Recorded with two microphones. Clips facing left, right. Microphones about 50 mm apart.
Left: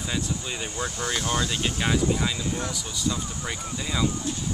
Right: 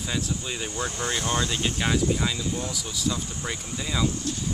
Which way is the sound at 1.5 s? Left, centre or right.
Centre.